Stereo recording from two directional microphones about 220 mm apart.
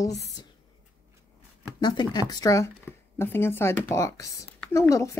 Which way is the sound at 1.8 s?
20° left (ahead or behind).